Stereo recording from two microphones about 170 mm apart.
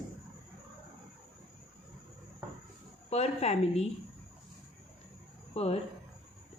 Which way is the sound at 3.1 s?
35° left (ahead or behind).